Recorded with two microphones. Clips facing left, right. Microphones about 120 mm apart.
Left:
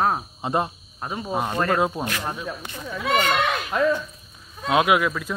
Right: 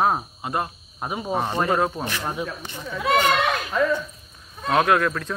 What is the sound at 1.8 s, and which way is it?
Speech, 10° left (ahead or behind).